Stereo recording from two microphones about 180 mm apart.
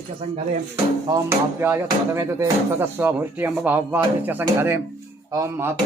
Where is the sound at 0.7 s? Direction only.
15° right (ahead or behind).